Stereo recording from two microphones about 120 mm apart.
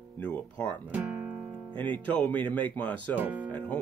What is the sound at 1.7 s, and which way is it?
Speech, 15° left (ahead or behind).